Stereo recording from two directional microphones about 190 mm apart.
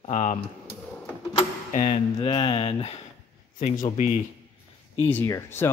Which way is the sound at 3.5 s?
40° left (ahead or behind).